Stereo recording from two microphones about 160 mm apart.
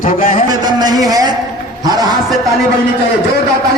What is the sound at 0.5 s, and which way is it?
Speech, 25° right (ahead or behind).